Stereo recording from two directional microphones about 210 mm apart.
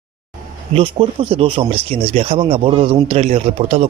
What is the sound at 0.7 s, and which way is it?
Speech, 25° right (ahead or behind).